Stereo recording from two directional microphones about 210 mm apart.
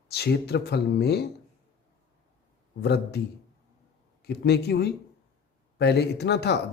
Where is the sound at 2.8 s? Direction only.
50° left (ahead or behind).